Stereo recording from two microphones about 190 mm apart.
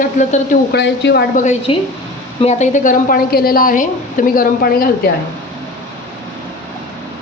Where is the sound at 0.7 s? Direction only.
65° left (ahead or behind).